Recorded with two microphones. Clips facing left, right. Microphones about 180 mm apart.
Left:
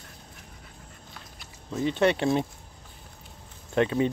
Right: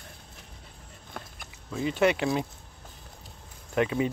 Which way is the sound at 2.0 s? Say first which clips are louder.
Left 1 dB; 30° left (ahead or behind).